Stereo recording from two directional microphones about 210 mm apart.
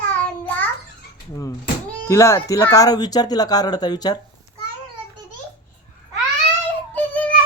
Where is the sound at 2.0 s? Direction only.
15° left (ahead or behind).